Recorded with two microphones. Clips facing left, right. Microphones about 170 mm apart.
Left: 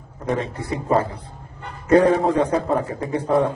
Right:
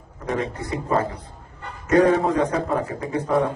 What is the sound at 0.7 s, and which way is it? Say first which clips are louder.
A man's voice: left 4 dB; 30° left (ahead or behind).